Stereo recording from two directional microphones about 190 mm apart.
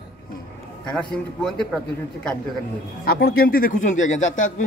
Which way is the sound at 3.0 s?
50° left (ahead or behind).